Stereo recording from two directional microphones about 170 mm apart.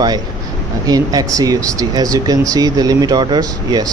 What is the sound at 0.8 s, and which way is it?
Speech, 20° right (ahead or behind).